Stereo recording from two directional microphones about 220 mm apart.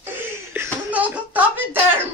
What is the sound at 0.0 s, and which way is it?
Laughter, 10° right (ahead or behind).